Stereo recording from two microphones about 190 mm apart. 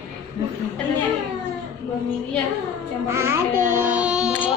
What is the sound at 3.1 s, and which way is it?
Speech, 15° right (ahead or behind).